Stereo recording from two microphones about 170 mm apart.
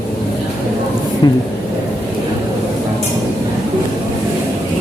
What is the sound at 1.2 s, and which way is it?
Speech, 25° left (ahead or behind).